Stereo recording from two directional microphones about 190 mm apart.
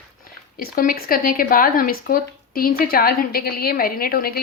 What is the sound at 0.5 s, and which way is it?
Speech, 50° left (ahead or behind).